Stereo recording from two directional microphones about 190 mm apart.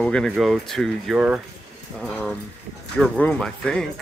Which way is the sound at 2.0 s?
5° left (ahead or behind).